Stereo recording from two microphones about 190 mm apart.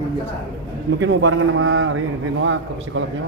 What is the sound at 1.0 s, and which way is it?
A man's voice, 90° right.